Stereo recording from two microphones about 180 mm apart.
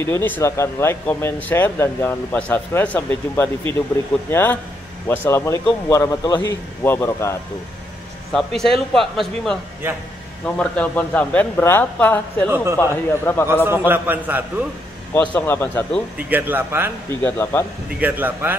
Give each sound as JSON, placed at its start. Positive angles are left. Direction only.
{"t": 0.0, "sound": "speech", "side_deg": 15}
{"t": 8.9, "sound": "speech", "side_deg": 0}
{"t": 9.8, "sound": "a man's voice", "side_deg": -10}
{"t": 10.4, "sound": "speech", "side_deg": 10}
{"t": 12.4, "sound": "a man's voice", "side_deg": -10}
{"t": 12.7, "sound": "speech", "side_deg": 10}
{"t": 13.7, "sound": "a man's voice", "side_deg": -10}
{"t": 15.1, "sound": "speech", "side_deg": 10}
{"t": 16.3, "sound": "a man's voice", "side_deg": -10}
{"t": 17.2, "sound": "speech", "side_deg": 15}
{"t": 18.0, "sound": "a man's voice", "side_deg": -10}